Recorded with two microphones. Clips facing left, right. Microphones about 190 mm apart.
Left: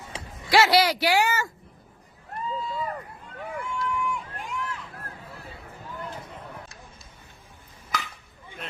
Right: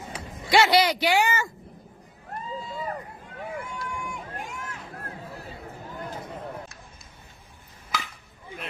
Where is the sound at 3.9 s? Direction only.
45° right (ahead or behind).